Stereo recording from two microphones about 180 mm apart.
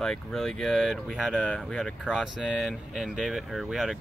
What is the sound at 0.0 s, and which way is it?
Speech, centre (ahead or behind).